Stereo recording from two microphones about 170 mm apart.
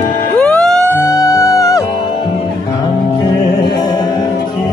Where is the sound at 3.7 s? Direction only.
25° left (ahead or behind).